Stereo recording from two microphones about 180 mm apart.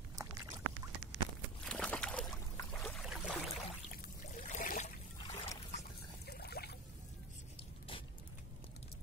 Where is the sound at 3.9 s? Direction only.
50° left (ahead or behind).